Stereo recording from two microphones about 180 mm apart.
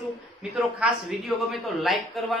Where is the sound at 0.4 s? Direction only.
5° right (ahead or behind).